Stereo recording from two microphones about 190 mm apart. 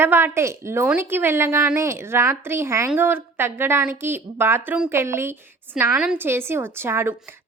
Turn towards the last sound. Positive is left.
turn(degrees=-10)  # may be behind; listen again after turning